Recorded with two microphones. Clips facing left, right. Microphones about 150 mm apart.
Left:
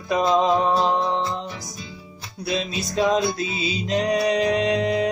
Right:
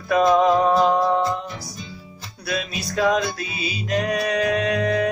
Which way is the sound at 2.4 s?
25° left (ahead or behind).